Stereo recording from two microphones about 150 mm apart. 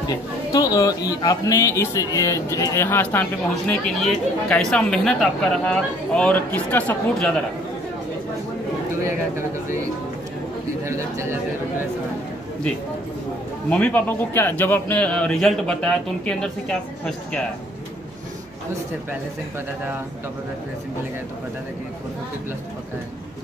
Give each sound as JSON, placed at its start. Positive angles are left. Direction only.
{"t": 0.1, "sound": "speech", "side_deg": 25}
{"t": 10.9, "sound": "a sound", "side_deg": -20}
{"t": 13.7, "sound": "speech", "side_deg": 10}